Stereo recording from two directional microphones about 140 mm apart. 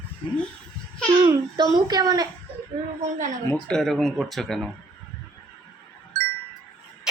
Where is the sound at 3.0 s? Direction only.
60° right (ahead or behind).